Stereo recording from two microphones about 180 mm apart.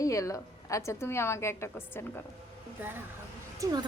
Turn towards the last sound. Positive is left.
turn(degrees=-20)  # may be behind; listen again after turning